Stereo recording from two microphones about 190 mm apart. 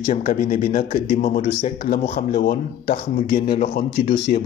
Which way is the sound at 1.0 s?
40° left (ahead or behind).